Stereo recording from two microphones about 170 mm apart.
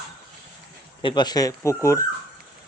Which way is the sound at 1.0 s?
25° left (ahead or behind).